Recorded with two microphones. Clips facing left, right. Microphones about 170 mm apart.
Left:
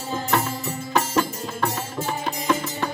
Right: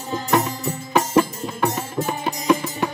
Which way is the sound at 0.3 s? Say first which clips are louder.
Right 5 dB; 15° right (ahead or behind).